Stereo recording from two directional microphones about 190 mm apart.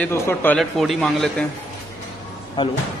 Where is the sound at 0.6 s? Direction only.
Centre (ahead or behind).